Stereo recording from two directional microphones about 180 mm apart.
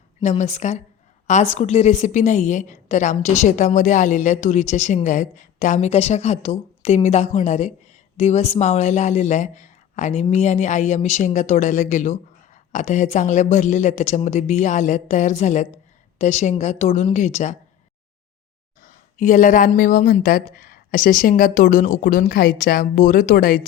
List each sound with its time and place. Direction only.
0.2 s a woman's voice: 40° left (ahead or behind)
18.8 s speech: 45° left (ahead or behind)